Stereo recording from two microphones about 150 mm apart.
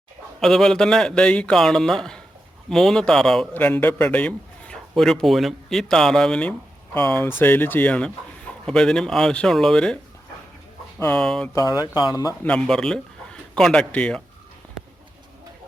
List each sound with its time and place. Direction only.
0.3 s a man's voice: centre (ahead or behind)
11.1 s a man's voice: 5° left (ahead or behind)
11.5 s speech: 25° left (ahead or behind)
12.4 s a man's voice: 5° left (ahead or behind)